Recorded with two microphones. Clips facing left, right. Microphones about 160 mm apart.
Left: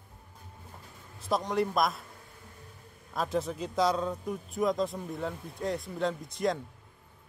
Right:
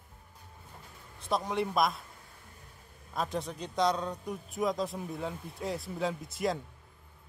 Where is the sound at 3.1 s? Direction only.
Centre (ahead or behind).